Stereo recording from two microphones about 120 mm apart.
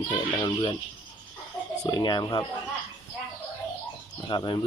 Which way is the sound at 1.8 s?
40° left (ahead or behind).